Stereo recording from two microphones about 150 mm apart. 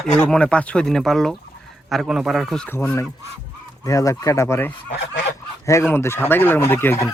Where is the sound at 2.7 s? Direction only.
15° left (ahead or behind).